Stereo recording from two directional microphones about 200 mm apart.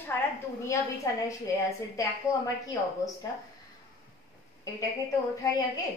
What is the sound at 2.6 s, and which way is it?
Speech, 15° left (ahead or behind).